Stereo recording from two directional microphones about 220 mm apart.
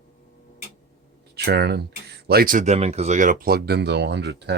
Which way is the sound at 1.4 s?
45° right (ahead or behind).